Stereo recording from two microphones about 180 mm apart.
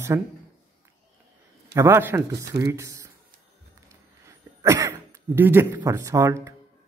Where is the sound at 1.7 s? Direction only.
15° right (ahead or behind).